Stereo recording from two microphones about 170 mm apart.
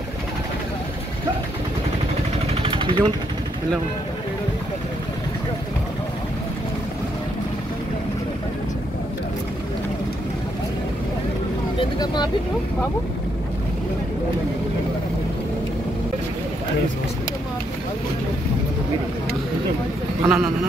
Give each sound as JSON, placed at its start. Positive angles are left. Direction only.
{"t": 2.6, "sound": "vehicle", "side_deg": -30}
{"t": 11.8, "sound": "speech", "side_deg": 25}
{"t": 20.2, "sound": "speech", "side_deg": -5}